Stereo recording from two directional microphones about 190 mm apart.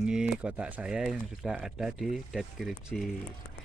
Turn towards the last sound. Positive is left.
turn(degrees=0)  # may be behind; listen again after turning